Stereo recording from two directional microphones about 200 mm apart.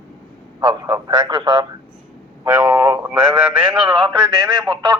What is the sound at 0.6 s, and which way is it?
A man's voice, 20° right (ahead or behind).